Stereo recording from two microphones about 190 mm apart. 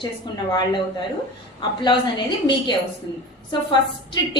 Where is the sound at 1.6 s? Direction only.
25° left (ahead or behind).